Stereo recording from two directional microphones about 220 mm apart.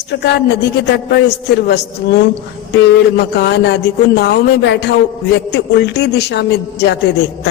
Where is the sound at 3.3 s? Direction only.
50° left (ahead or behind).